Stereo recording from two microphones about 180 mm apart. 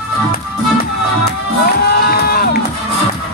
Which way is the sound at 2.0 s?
60° left (ahead or behind).